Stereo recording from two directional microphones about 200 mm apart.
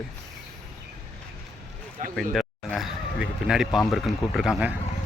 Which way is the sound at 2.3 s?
Centre (ahead or behind).